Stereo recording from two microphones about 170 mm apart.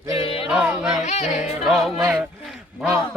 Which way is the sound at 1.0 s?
40° left (ahead or behind).